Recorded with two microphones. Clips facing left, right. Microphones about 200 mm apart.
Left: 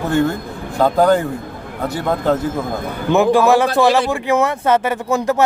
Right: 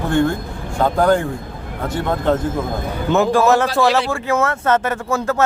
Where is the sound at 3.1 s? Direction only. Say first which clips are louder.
Left 2 dB; 15° left (ahead or behind).